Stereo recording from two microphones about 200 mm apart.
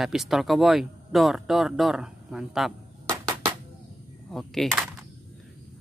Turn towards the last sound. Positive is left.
turn(degrees=0)  # may be behind; listen again after turning